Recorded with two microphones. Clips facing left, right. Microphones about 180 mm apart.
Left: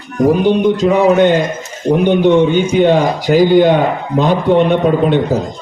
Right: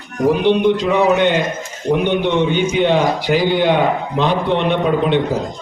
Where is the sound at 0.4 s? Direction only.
45° left (ahead or behind).